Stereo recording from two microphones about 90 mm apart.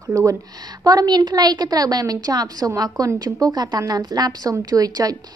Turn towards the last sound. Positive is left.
turn(degrees=-45)  # may be behind; listen again after turning